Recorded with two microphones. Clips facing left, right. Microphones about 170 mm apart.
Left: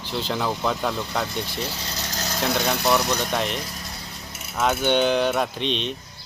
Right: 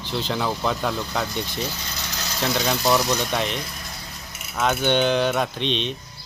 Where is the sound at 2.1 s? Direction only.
45° left (ahead or behind).